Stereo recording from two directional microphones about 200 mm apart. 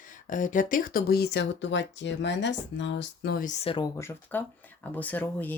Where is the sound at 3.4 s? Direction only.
30° left (ahead or behind).